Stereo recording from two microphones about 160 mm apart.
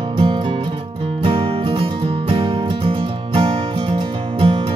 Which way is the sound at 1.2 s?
35° right (ahead or behind).